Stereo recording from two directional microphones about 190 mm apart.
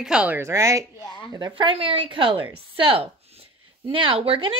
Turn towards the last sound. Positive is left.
turn(degrees=-30)  # may be behind; listen again after turning